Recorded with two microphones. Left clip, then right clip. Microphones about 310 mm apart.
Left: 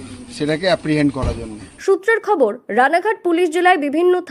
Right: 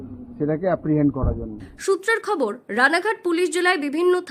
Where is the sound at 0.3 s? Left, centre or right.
Centre.